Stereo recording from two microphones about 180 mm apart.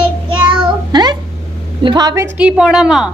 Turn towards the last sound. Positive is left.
turn(degrees=-5)  # may be behind; listen again after turning